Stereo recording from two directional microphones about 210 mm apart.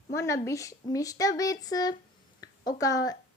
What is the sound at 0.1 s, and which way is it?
A woman's voice, 15° left (ahead or behind).